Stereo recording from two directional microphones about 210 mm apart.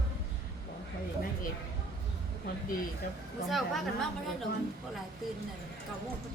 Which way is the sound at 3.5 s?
Centre (ahead or behind).